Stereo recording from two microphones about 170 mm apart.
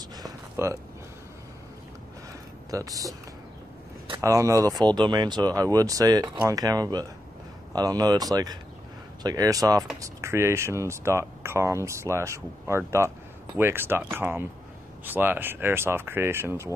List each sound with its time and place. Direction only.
0.1 s a sound: 20° right (ahead or behind)
2.7 s speech: 20° right (ahead or behind)
4.2 s speech: 20° right (ahead or behind)